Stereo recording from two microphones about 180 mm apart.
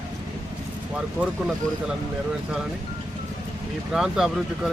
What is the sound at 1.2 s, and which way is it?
Speech, 10° right (ahead or behind).